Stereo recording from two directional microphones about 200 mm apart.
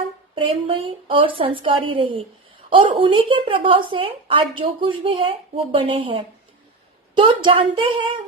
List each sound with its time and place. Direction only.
0.3 s a woman's voice: 25° right (ahead or behind)